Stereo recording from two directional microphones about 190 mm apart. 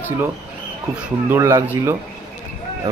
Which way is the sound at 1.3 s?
15° right (ahead or behind).